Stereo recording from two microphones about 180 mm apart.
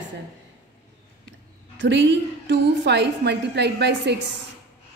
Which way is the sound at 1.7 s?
80° right.